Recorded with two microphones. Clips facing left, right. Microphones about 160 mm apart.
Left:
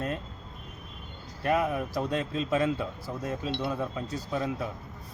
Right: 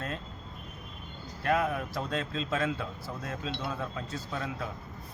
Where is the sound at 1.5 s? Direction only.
15° left (ahead or behind).